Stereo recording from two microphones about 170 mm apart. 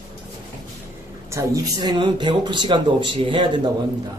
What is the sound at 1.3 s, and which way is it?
Speech, 20° right (ahead or behind).